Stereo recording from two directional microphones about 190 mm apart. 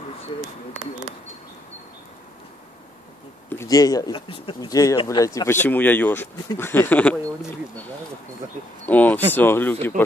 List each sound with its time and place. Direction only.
3.4 s speech: 15° left (ahead or behind)
8.8 s speech: 10° left (ahead or behind)